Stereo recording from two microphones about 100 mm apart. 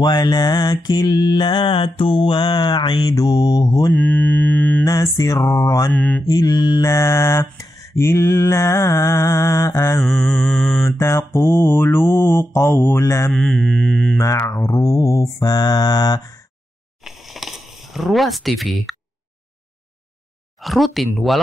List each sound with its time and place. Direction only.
0.0 s mantra: 45° left (ahead or behind)
3.9 s mantra: 15° left (ahead or behind)
4.8 s mantra: 40° left (ahead or behind)
5.9 s mantra: 15° left (ahead or behind)
6.2 s mantra: 40° left (ahead or behind)
6.8 s mantra: 30° left (ahead or behind)
10.0 s mantra: centre (ahead or behind)
10.9 s mantra: 25° left (ahead or behind)
13.3 s mantra: 5° left (ahead or behind)
14.1 s mantra: 30° left (ahead or behind)
17.0 s a sound: centre (ahead or behind)
20.6 s mantra: centre (ahead or behind)